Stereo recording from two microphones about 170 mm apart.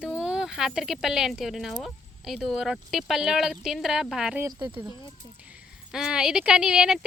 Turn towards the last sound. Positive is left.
turn(degrees=-5)  # may be behind; listen again after turning